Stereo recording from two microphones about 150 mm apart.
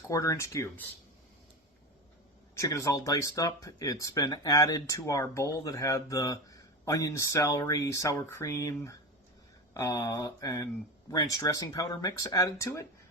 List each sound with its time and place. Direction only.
0.1 s speech: 20° left (ahead or behind)
2.6 s speech: 20° left (ahead or behind)